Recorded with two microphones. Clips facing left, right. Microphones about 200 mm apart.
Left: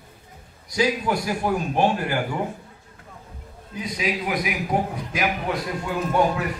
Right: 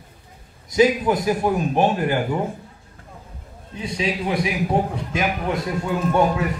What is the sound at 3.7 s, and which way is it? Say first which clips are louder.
A man's voice: right 2 dB; 30° right (ahead or behind).